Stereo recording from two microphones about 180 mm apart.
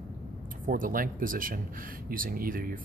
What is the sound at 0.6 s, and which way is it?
Speech, 50° right (ahead or behind).